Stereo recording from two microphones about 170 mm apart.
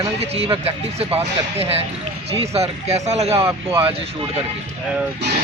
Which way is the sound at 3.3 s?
15° right (ahead or behind).